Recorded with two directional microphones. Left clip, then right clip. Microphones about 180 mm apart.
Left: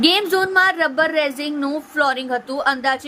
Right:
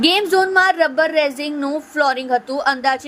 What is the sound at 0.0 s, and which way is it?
A woman's voice, 15° right (ahead or behind).